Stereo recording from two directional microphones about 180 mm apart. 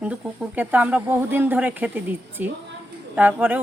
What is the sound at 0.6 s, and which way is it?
Speech, 10° right (ahead or behind).